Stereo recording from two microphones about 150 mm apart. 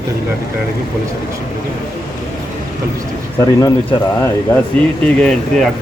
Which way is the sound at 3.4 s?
25° left (ahead or behind).